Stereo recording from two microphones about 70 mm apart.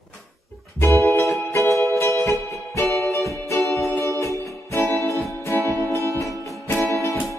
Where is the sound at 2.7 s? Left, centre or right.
Left.